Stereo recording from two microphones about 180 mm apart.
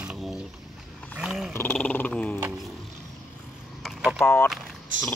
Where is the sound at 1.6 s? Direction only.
5° left (ahead or behind).